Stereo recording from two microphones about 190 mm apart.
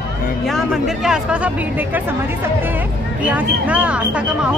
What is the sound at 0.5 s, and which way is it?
Speech, 5° right (ahead or behind).